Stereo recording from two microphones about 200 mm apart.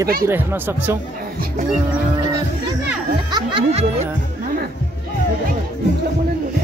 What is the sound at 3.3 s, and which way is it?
Speech, 25° right (ahead or behind).